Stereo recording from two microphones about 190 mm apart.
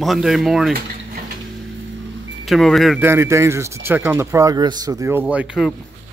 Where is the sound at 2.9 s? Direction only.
15° right (ahead or behind).